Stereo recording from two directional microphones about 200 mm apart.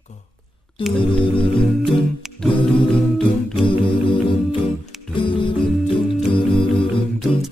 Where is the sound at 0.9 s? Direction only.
25° left (ahead or behind).